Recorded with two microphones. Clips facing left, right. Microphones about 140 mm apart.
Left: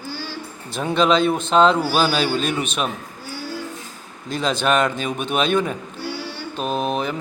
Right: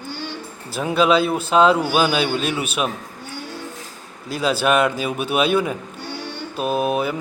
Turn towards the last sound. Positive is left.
turn(degrees=-5)  # may be behind; listen again after turning